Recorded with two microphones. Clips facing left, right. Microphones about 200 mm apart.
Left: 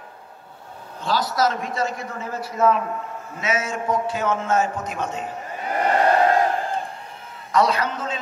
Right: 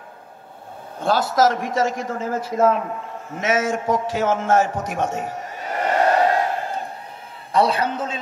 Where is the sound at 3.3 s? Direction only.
90° right.